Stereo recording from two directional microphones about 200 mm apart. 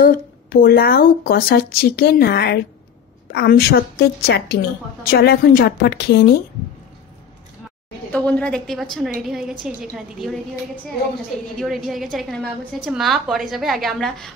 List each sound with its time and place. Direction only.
0.0 s a woman's voice: 45° left (ahead or behind)
8.3 s a woman's voice: 5° left (ahead or behind)
11.5 s a woman's voice: centre (ahead or behind)